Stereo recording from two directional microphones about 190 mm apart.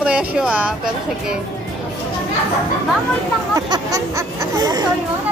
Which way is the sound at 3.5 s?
20° right (ahead or behind).